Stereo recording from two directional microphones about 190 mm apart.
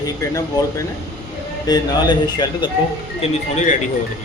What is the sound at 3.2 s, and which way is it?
Speech, 40° left (ahead or behind).